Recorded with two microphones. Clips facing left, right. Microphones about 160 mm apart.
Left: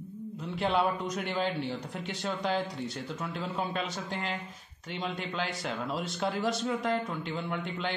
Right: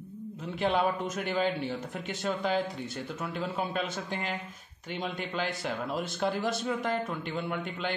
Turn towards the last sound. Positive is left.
turn(degrees=0)  # may be behind; listen again after turning